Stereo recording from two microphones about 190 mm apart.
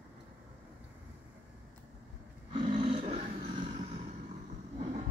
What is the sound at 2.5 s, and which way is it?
Roar, 25° right (ahead or behind).